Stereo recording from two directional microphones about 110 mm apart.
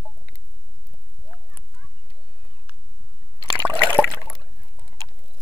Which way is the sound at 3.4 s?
25° left (ahead or behind).